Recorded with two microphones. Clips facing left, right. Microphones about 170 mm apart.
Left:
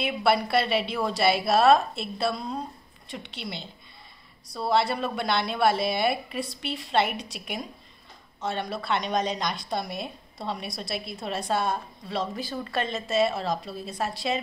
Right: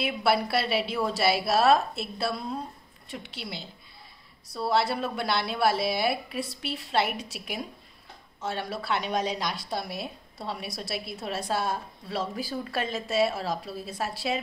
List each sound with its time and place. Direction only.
0.0 s a woman's voice: centre (ahead or behind)